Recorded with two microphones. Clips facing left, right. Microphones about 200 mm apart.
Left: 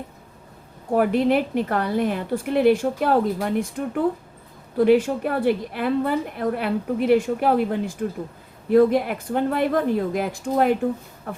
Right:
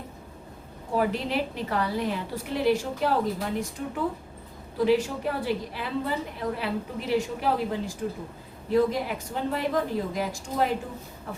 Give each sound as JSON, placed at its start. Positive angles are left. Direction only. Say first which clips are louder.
{"t": 0.9, "sound": "a woman's voice", "louder": "left 7 dB", "side_deg": 55}